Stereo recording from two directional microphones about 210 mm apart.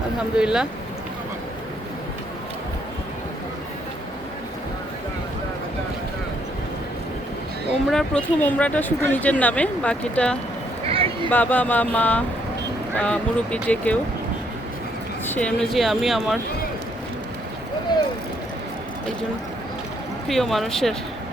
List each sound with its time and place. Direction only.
0.3 s speech: 5° right (ahead or behind)
7.9 s speech: 5° left (ahead or behind)
10.8 s a sound: 25° right (ahead or behind)
11.3 s speech: 10° left (ahead or behind)
15.3 s speech: 5° left (ahead or behind)
17.9 s a sound: 20° left (ahead or behind)
20.2 s speech: centre (ahead or behind)